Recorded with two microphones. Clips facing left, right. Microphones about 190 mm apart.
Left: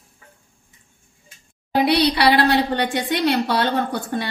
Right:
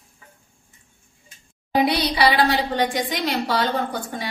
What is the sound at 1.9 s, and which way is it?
A woman's voice, 65° left (ahead or behind).